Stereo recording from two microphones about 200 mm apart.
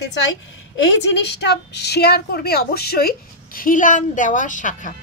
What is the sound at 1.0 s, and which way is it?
A woman's voice, 60° left (ahead or behind).